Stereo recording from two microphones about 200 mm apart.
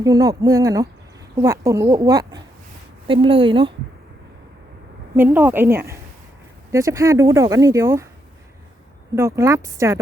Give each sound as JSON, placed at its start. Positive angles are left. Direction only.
{"t": 0.0, "sound": "speech", "side_deg": -15}
{"t": 5.1, "sound": "speech", "side_deg": -10}
{"t": 9.1, "sound": "speech", "side_deg": -15}